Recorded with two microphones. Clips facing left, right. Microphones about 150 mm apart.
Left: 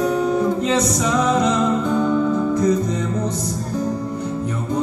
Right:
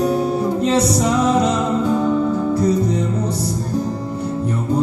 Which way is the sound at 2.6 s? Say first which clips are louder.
Right 1 dB; 30° right (ahead or behind).